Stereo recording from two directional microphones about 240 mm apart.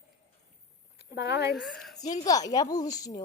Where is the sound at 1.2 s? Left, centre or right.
Left.